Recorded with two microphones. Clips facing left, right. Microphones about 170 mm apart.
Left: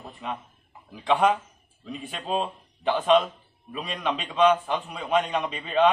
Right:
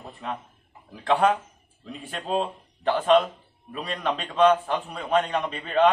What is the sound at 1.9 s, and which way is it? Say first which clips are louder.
A man's voice: right 1 dB; 10° left (ahead or behind).